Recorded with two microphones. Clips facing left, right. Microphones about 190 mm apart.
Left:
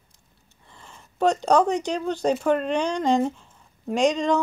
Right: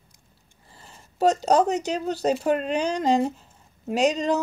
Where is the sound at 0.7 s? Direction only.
35° right (ahead or behind).